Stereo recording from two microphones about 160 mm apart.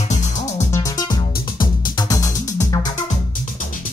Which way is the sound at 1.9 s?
20° left (ahead or behind).